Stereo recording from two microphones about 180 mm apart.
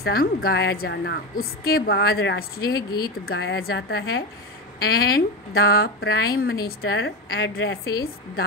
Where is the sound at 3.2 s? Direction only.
70° left (ahead or behind).